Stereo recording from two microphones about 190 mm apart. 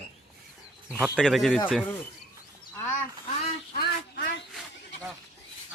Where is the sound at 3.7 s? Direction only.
55° left (ahead or behind).